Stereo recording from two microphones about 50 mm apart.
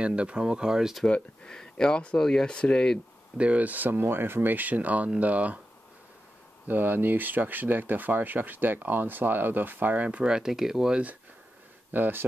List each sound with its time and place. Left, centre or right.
0.0 s speech: right
1.0 s speech: centre
3.3 s speech: right
6.7 s speech: right
10.0 s speech: right
10.3 s speech: centre
11.9 s speech: right